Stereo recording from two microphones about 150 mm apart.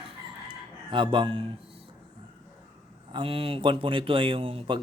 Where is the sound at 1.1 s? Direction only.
35° right (ahead or behind).